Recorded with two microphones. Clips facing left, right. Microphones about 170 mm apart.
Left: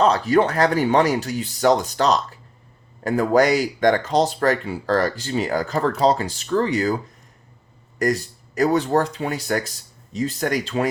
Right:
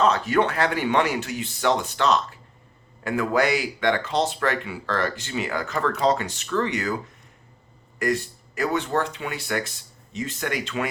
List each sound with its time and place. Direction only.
0.0 s speech: 35° left (ahead or behind)
7.9 s speech: 40° left (ahead or behind)